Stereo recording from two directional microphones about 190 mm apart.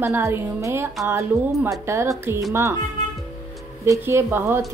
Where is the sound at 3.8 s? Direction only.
15° right (ahead or behind).